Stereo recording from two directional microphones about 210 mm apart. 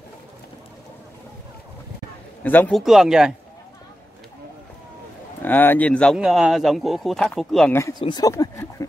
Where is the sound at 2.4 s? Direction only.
10° left (ahead or behind).